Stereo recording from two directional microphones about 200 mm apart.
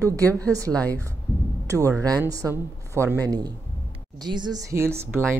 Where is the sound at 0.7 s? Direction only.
5° left (ahead or behind).